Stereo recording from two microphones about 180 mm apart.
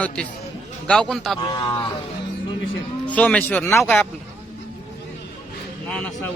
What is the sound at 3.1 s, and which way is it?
Speech, 5° left (ahead or behind).